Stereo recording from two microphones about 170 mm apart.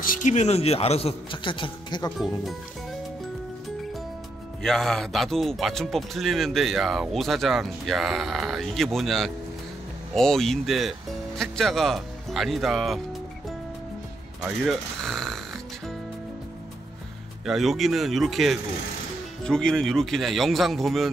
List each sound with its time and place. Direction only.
0.0 s a man's voice: 50° left (ahead or behind); by 2.0 s 30° left (ahead or behind)
2.1 s speech: centre (ahead or behind)
4.6 s speech: centre (ahead or behind)
14.4 s speech: centre (ahead or behind)
17.5 s speech: centre (ahead or behind)